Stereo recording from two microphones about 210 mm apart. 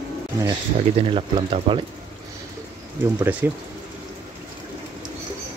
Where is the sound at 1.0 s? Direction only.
25° right (ahead or behind).